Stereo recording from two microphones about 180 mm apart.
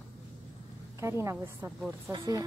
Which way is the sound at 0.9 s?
15° right (ahead or behind).